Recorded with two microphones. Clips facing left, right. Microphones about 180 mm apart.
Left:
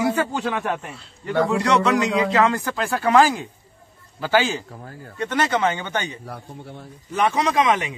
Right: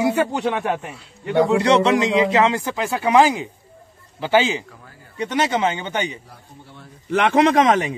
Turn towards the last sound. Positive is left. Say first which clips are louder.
# right 4 dB
turn(degrees=-40)  # may be behind; listen again after turning